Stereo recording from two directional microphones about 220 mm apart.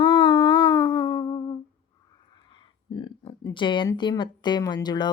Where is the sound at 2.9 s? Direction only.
20° left (ahead or behind).